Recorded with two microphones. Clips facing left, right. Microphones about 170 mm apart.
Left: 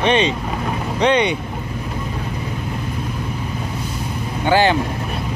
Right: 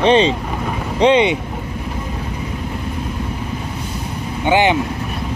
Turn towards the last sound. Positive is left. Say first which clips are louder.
# right 1 dB
turn(degrees=-20)  # may be behind; listen again after turning